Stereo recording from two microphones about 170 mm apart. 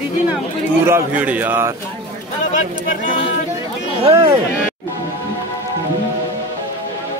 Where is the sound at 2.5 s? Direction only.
50° left (ahead or behind).